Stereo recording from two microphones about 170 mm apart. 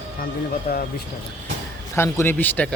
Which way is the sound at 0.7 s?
60° left (ahead or behind).